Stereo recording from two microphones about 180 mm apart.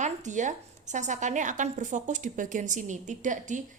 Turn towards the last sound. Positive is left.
turn(degrees=-45)  # may be behind; listen again after turning